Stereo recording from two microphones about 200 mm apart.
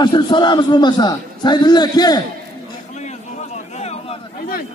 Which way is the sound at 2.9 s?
35° left (ahead or behind).